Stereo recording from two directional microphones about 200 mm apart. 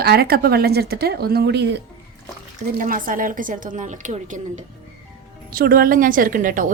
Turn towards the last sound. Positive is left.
turn(degrees=-40)  # may be behind; listen again after turning